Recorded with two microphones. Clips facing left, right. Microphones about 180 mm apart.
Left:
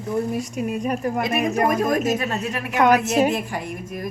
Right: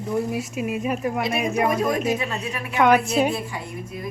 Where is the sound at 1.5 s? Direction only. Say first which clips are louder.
Left 1 dB; 45° left (ahead or behind).